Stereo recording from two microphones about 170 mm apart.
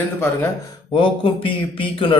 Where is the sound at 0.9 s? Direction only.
30° left (ahead or behind).